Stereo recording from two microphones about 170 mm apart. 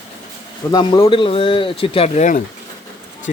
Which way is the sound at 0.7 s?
30° left (ahead or behind).